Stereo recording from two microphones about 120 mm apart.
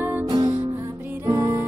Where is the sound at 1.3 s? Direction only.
25° right (ahead or behind).